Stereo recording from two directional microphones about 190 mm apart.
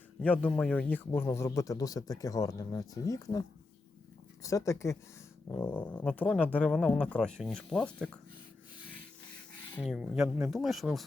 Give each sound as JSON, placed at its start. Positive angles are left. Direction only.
{"t": 0.2, "sound": "a man's voice", "side_deg": 5}
{"t": 4.4, "sound": "a man's voice", "side_deg": 15}
{"t": 9.8, "sound": "speech", "side_deg": 0}